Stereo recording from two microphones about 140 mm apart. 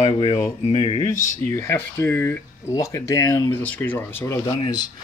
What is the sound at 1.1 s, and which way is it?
Speech, 70° left (ahead or behind).